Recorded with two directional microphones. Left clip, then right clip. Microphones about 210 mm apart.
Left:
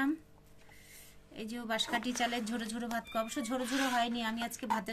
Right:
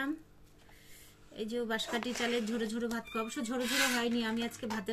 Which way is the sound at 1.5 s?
55° left (ahead or behind).